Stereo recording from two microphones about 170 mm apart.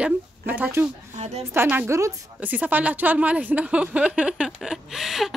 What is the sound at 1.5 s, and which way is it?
A woman's voice, 10° right (ahead or behind).